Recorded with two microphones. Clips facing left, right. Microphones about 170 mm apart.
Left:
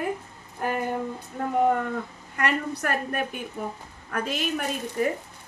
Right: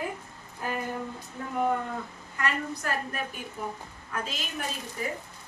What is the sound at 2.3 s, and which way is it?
A woman's voice, 65° left (ahead or behind).